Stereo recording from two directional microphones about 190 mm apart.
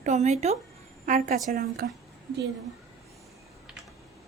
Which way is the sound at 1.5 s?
55° right (ahead or behind).